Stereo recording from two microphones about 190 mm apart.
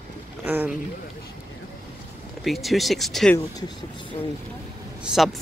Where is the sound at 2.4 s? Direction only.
Centre (ahead or behind).